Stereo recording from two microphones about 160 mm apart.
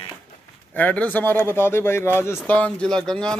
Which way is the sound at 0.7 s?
10° left (ahead or behind).